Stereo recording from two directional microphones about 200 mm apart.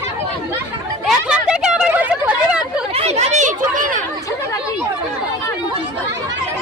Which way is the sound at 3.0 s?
35° right (ahead or behind).